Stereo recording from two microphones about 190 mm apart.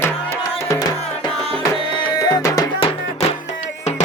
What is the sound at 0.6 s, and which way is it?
Music, 20° left (ahead or behind).